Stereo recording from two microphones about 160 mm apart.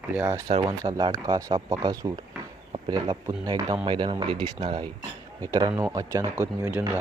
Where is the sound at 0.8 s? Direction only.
25° right (ahead or behind).